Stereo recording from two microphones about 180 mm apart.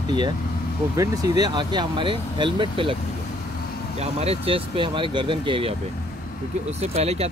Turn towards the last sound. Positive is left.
turn(degrees=-35)  # may be behind; listen again after turning